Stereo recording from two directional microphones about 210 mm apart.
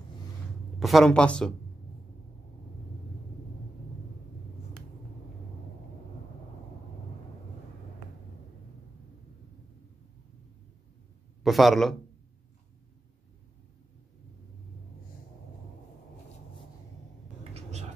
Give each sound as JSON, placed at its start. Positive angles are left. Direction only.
{"t": 0.7, "sound": "speech", "side_deg": 0}
{"t": 11.4, "sound": "speech", "side_deg": 0}
{"t": 17.4, "sound": "a sound", "side_deg": -30}